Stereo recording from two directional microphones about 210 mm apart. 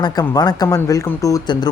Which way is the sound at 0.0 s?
20° left (ahead or behind).